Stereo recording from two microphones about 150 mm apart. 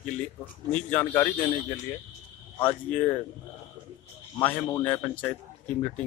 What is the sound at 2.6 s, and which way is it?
Speech, 10° left (ahead or behind).